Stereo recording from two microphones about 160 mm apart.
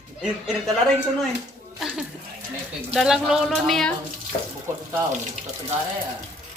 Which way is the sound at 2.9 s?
5° right (ahead or behind).